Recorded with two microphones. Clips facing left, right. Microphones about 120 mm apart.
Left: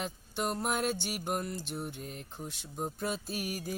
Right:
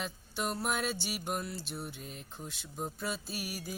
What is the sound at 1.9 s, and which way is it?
Speech, 60° left (ahead or behind).